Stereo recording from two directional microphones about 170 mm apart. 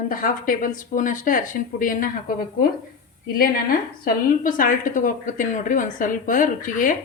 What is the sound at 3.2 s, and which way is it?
A woman's voice, 60° left (ahead or behind).